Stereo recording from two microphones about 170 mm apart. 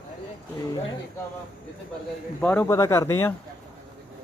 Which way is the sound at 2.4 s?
10° left (ahead or behind).